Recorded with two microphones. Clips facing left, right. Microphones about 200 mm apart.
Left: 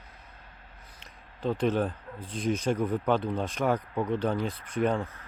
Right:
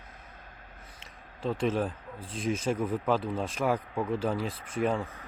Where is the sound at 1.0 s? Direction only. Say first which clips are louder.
Left 2 dB; centre (ahead or behind).